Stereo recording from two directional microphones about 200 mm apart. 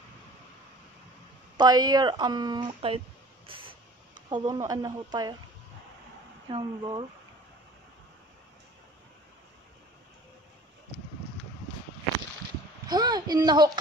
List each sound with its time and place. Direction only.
1.6 s a woman's voice: 20° right (ahead or behind)
3.4 s vehicle: 25° right (ahead or behind)
4.3 s a woman's voice: 20° right (ahead or behind)
6.5 s a woman's voice: 25° right (ahead or behind)
12.4 s a sound: 20° right (ahead or behind)